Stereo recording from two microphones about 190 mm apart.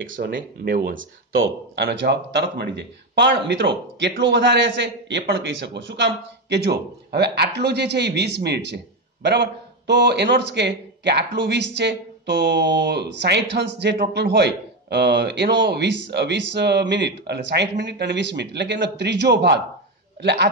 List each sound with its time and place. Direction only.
0.2 s speech: 50° right (ahead or behind)
0.9 s speech: 90° right
1.9 s a man's voice: 60° right (ahead or behind)